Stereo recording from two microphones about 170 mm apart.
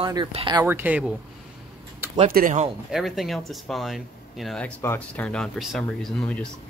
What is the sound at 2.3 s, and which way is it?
Speech, 50° right (ahead or behind).